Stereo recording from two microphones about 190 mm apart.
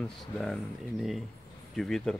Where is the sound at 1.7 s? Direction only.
Centre (ahead or behind).